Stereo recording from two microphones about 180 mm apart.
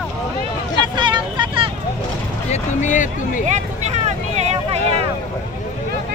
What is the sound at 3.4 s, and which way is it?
Vehicle, 40° right (ahead or behind).